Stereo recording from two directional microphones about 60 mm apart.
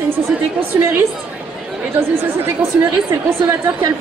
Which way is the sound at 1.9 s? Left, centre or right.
Right.